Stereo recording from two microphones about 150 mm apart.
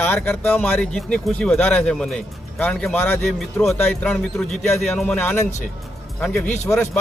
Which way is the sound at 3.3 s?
Centre (ahead or behind).